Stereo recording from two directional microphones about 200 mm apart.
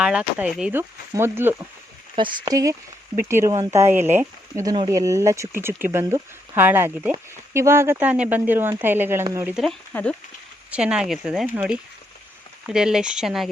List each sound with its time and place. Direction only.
0.0 s speech: 5° right (ahead or behind)
9.6 s speech: 5° left (ahead or behind)
10.7 s speech: 5° right (ahead or behind)